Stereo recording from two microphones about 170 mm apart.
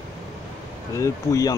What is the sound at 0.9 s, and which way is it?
Speech, 20° left (ahead or behind).